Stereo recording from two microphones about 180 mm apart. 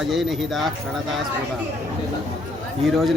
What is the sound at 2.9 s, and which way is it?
Speech, centre (ahead or behind).